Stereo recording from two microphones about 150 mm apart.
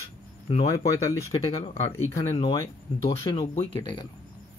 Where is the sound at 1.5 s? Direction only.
40° left (ahead or behind).